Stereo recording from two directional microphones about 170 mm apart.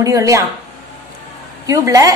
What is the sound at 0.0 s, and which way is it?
Speech, 20° right (ahead or behind).